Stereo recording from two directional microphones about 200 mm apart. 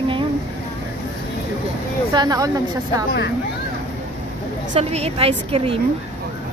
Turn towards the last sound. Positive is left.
turn(degrees=-30)  # may be behind; listen again after turning